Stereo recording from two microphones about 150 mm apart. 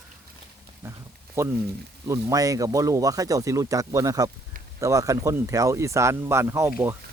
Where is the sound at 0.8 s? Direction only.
15° right (ahead or behind).